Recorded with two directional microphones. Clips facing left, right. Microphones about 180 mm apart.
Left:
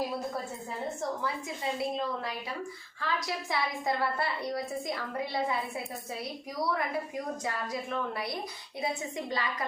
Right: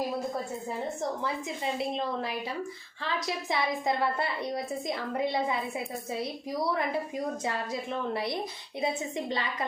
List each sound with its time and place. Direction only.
1.2 s a woman's voice: 20° right (ahead or behind)
7.4 s a woman's voice: 25° right (ahead or behind)